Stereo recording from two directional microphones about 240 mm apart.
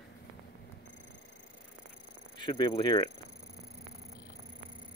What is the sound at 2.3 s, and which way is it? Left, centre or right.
Speech, centre.